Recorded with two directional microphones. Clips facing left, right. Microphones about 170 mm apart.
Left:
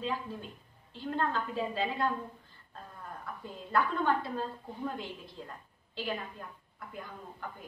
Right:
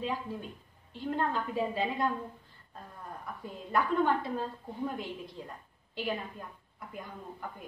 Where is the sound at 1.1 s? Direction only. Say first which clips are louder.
Right 1 dB; 15° right (ahead or behind).